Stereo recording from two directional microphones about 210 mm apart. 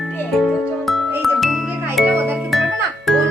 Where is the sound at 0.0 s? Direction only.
5° left (ahead or behind).